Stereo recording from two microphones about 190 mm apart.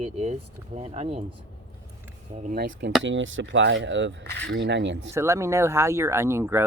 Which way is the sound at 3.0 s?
80° right.